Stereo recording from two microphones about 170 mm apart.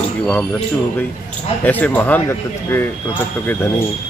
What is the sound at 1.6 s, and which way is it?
Speech, 10° left (ahead or behind).